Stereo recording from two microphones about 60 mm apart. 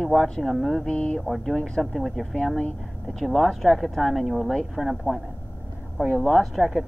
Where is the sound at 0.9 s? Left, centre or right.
Centre.